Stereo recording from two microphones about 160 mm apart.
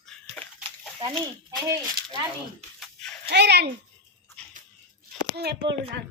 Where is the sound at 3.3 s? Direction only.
90° right.